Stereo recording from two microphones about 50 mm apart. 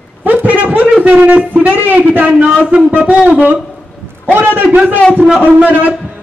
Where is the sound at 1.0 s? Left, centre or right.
Right.